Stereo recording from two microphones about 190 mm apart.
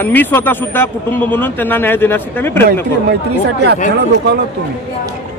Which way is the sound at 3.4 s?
60° right (ahead or behind).